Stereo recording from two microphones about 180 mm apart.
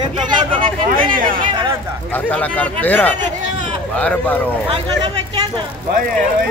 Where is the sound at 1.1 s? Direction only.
50° right (ahead or behind).